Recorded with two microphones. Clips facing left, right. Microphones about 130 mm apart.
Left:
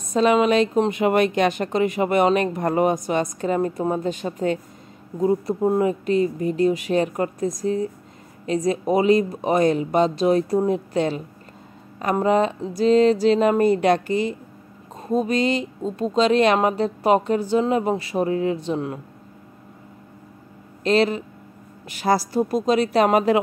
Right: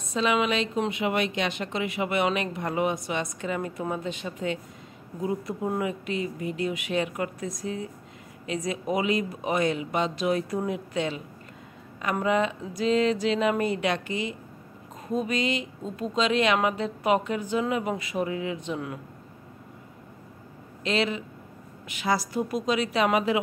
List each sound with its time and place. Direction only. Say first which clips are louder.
0.1 s a woman's voice: left 8 dB; 45° left (ahead or behind)
20.8 s speech: left 8 dB; 40° left (ahead or behind)